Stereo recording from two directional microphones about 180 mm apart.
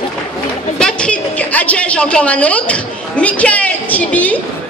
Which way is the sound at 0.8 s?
5° left (ahead or behind).